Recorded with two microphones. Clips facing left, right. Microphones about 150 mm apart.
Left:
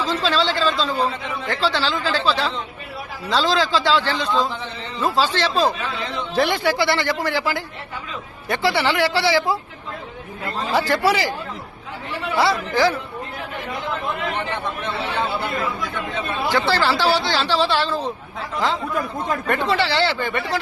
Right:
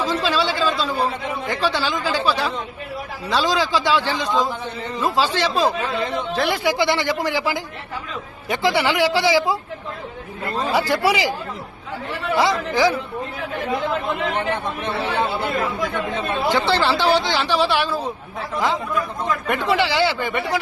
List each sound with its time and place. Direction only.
0.0 s speech: 10° right (ahead or behind)
6.3 s a man's voice: centre (ahead or behind)
6.6 s speech: 15° right (ahead or behind)
10.7 s speech: 10° right (ahead or behind)
12.4 s speech: 15° right (ahead or behind)
15.5 s speech: 55° right (ahead or behind)
16.5 s speech: 20° right (ahead or behind)
19.5 s speech: 15° right (ahead or behind)